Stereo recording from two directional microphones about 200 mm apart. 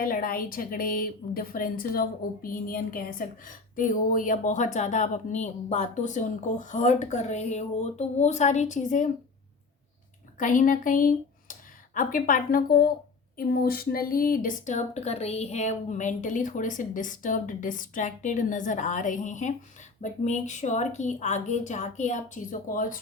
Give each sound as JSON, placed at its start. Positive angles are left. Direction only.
{"t": 0.0, "sound": "a woman's voice", "side_deg": 45}
{"t": 10.3, "sound": "a woman's voice", "side_deg": 40}